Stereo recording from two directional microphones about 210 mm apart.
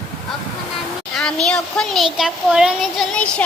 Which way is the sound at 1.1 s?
5° left (ahead or behind).